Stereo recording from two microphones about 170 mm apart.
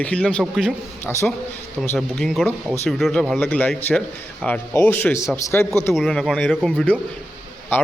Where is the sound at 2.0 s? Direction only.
Centre (ahead or behind).